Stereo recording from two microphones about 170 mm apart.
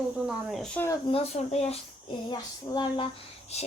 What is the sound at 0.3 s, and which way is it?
Speech, centre (ahead or behind).